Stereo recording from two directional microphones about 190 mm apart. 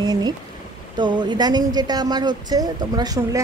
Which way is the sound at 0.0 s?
20° right (ahead or behind).